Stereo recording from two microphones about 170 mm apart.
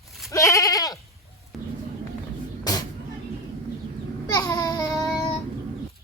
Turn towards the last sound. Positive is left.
turn(degrees=20)  # may be behind; listen again after turning